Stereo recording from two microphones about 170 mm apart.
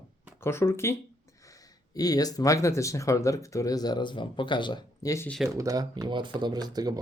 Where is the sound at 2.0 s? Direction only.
20° left (ahead or behind).